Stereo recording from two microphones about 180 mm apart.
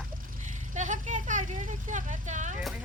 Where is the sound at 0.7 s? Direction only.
45° right (ahead or behind).